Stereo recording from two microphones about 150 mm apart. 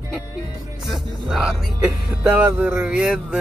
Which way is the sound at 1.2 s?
5° right (ahead or behind).